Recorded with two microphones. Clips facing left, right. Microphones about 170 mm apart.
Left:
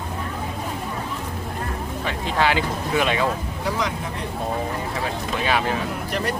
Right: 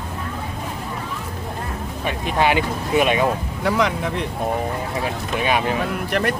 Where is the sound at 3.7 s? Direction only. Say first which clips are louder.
Right 6 dB; 65° right (ahead or behind).